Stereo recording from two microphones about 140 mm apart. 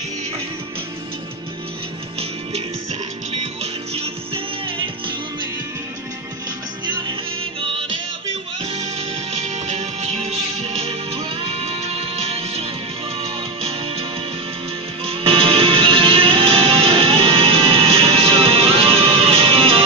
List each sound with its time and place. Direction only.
3.9 s music: 45° right (ahead or behind)
8.6 s music: 45° right (ahead or behind)
15.0 s music: 40° right (ahead or behind)